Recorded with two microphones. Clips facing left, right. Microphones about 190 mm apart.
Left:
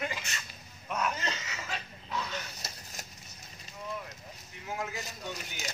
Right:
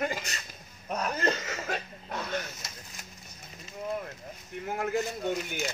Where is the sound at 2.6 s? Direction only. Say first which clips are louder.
Left 1 dB; 35° left (ahead or behind).